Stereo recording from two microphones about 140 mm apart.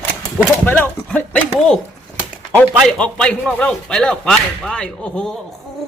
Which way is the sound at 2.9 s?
5° left (ahead or behind).